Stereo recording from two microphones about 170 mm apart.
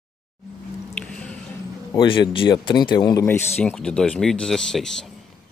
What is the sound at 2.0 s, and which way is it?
Speech, 30° left (ahead or behind).